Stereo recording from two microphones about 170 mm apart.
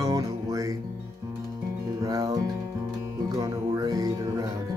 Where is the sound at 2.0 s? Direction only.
20° right (ahead or behind).